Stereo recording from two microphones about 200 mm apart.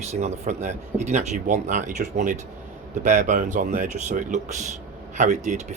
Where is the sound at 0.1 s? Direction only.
35° right (ahead or behind).